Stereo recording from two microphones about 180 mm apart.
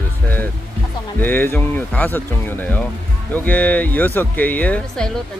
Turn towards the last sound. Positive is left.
turn(degrees=5)  # may be behind; listen again after turning